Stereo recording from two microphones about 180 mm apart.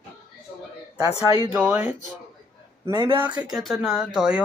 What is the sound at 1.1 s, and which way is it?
Speech, 20° left (ahead or behind).